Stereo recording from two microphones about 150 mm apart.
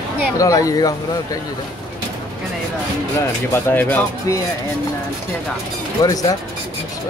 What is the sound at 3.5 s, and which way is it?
Speech, 10° left (ahead or behind).